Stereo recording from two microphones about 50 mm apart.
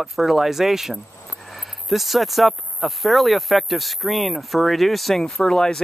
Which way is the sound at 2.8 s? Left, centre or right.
Centre.